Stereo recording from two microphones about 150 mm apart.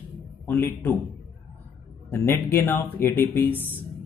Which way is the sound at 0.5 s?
15° left (ahead or behind).